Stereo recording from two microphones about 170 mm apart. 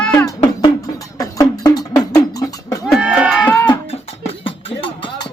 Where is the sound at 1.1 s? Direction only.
20° left (ahead or behind).